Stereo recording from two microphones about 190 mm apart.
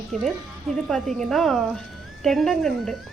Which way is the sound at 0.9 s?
Centre (ahead or behind).